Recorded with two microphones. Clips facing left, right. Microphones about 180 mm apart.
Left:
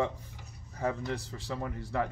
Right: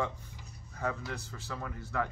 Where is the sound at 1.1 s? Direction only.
35° left (ahead or behind).